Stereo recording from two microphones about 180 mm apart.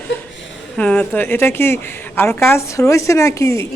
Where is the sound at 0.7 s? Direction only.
10° left (ahead or behind).